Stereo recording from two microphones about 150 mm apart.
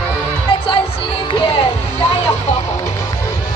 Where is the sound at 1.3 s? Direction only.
35° left (ahead or behind).